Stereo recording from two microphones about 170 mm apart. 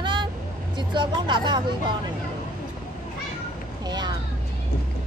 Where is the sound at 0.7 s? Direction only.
25° right (ahead or behind).